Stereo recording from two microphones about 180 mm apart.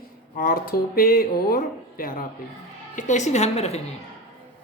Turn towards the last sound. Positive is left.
turn(degrees=35)  # may be behind; listen again after turning